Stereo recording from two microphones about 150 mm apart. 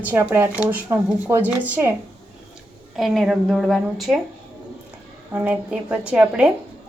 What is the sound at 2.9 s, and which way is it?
A woman's voice, centre (ahead or behind).